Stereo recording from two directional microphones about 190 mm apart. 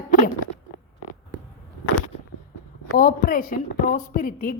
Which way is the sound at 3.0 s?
50° left (ahead or behind).